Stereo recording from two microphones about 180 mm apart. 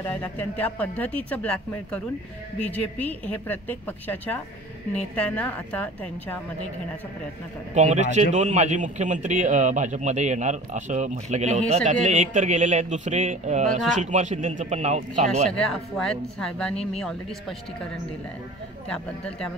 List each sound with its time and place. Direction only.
0.1 s speech: 10° left (ahead or behind)
7.7 s a man's voice: 40° right (ahead or behind)
15.7 s a woman's voice: 5° left (ahead or behind)
18.9 s a woman's voice: 5° left (ahead or behind)